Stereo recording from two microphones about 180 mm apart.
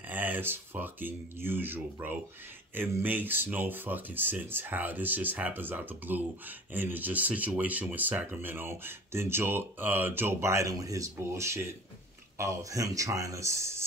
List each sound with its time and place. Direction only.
0.1 s speech: 10° right (ahead or behind)